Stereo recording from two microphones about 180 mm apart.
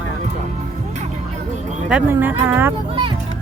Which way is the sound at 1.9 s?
10° right (ahead or behind).